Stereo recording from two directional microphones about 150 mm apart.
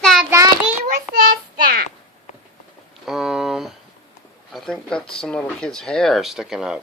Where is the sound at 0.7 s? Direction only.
65° right (ahead or behind).